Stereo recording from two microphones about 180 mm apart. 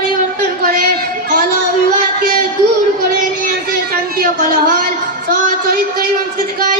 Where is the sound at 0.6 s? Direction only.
55° right (ahead or behind).